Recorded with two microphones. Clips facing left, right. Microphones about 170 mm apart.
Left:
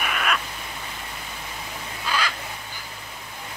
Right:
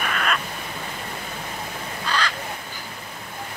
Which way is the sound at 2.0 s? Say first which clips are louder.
Right 1 dB; 10° left (ahead or behind).